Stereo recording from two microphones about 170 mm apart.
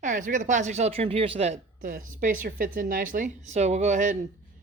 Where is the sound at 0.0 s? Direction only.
50° right (ahead or behind).